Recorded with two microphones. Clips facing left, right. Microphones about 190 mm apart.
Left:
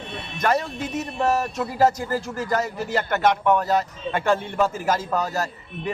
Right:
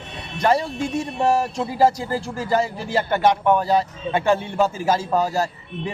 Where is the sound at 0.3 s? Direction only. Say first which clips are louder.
Right 3 dB; 30° right (ahead or behind).